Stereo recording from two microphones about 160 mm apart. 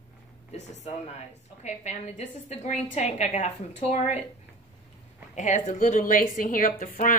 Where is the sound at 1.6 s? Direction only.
45° left (ahead or behind).